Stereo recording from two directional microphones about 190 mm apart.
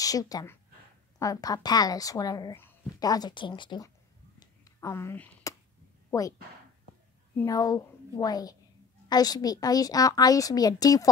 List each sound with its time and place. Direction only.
0.0 s a woman's voice: 20° left (ahead or behind)
4.4 s a sound: 15° left (ahead or behind)
7.4 s speech: 20° left (ahead or behind)